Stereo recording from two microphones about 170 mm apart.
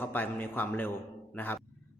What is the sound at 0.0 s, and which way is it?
Speech, 10° left (ahead or behind).